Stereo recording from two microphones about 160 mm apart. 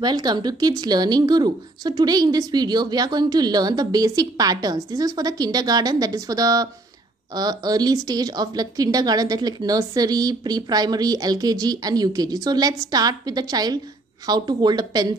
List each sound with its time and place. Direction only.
0.0 s a woman's voice: 25° right (ahead or behind)